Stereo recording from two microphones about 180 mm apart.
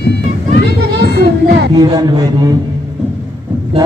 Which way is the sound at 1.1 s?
65° right (ahead or behind).